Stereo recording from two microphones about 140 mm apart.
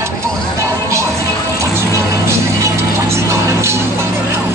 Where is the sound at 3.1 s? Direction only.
20° right (ahead or behind).